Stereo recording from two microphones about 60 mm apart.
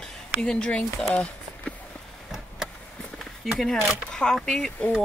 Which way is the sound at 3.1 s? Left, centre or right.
Centre.